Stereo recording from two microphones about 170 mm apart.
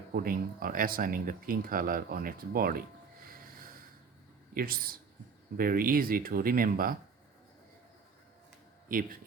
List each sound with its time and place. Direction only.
0.1 s speech: 60° right (ahead or behind)
4.5 s speech: 60° right (ahead or behind)
8.9 s speech: 55° right (ahead or behind)